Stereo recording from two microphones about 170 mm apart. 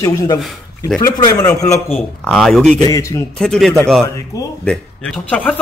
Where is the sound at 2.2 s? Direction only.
Centre (ahead or behind).